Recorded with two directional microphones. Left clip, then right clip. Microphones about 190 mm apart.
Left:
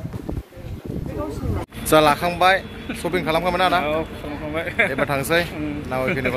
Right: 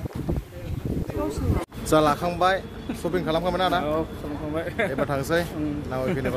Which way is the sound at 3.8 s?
15° right (ahead or behind).